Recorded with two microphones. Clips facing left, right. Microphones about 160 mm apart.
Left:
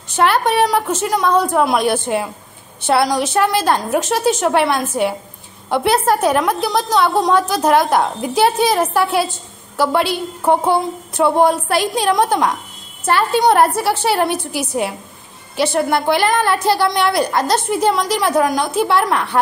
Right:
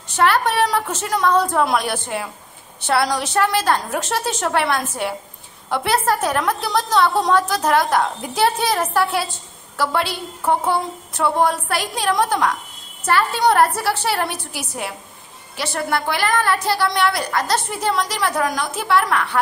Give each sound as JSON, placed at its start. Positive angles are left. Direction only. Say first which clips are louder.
{"t": 0.1, "sound": "a woman's voice", "louder": "left 3 dB", "side_deg": 20}